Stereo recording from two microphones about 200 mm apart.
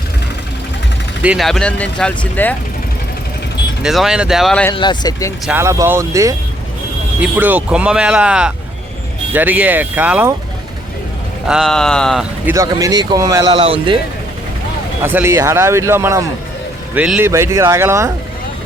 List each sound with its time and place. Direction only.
1.2 s speech: 5° right (ahead or behind)
3.8 s speech: centre (ahead or behind)
4.7 s speech: 25° left (ahead or behind)
5.5 s speech: 15° right (ahead or behind)
11.4 s speech: centre (ahead or behind)
12.5 s speech: 15° right (ahead or behind)
15.0 s speech: 10° right (ahead or behind)